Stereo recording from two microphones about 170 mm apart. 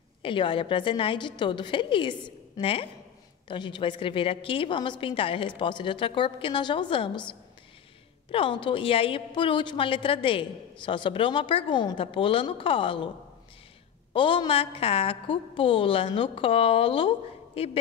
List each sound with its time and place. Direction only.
0.2 s a woman's voice: 30° left (ahead or behind)
14.1 s a woman's voice: 30° left (ahead or behind)